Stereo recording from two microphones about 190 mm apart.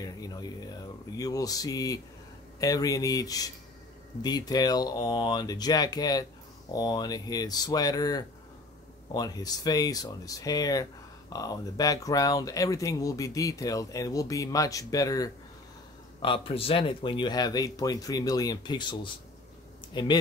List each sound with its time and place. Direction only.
0.0 s speech: 20° left (ahead or behind)